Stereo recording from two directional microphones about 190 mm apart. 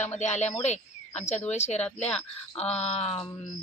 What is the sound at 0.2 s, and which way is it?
Speech, 35° left (ahead or behind).